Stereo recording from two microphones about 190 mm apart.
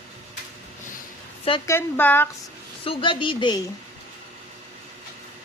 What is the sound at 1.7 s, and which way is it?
Speech, 10° left (ahead or behind).